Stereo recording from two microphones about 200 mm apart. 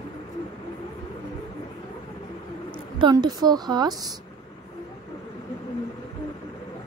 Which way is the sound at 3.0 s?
20° right (ahead or behind).